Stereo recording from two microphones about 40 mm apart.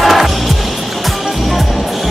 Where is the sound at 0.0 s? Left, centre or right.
Centre.